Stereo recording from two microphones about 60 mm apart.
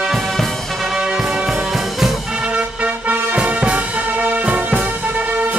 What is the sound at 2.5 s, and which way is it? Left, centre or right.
Music, right.